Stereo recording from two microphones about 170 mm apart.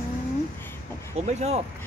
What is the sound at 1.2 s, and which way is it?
Speech, 40° right (ahead or behind).